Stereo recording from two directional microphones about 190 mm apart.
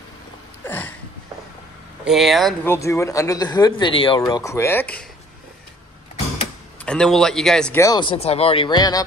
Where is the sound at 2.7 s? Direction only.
15° left (ahead or behind).